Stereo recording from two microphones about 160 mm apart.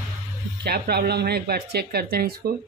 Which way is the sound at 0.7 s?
90° right.